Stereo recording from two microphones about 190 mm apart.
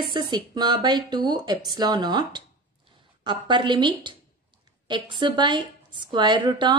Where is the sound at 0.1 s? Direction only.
25° right (ahead or behind).